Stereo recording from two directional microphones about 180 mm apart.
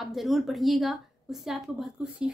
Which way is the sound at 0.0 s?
Centre (ahead or behind).